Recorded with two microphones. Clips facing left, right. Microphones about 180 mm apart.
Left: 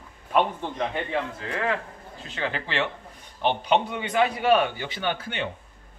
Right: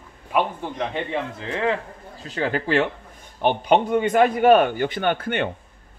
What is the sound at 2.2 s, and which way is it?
A man's voice, 40° right (ahead or behind).